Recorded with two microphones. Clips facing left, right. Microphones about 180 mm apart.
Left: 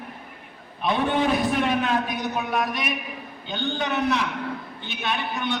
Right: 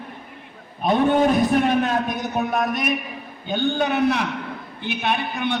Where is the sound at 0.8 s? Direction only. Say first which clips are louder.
Right 5 dB; 45° right (ahead or behind).